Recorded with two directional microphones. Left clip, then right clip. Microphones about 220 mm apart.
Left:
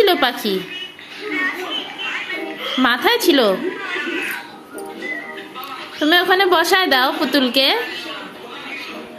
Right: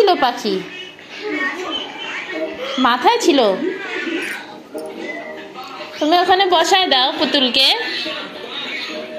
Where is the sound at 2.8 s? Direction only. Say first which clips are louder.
Right 2 dB; 15° left (ahead or behind).